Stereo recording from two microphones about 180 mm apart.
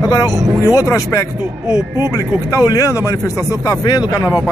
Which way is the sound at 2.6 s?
20° left (ahead or behind).